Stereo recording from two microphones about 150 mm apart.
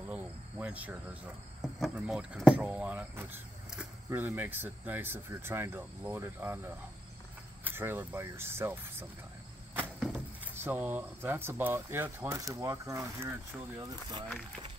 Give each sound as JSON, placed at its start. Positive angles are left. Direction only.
{"t": 0.1, "sound": "cricket", "side_deg": -10}
{"t": 1.8, "sound": "speech", "side_deg": -5}
{"t": 7.6, "sound": "speech", "side_deg": -15}
{"t": 10.5, "sound": "speech", "side_deg": -15}